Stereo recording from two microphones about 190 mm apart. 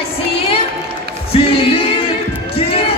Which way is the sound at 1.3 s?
30° left (ahead or behind).